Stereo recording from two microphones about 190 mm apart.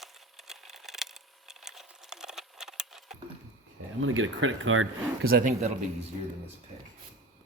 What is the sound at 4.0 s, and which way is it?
Speech, 90° right.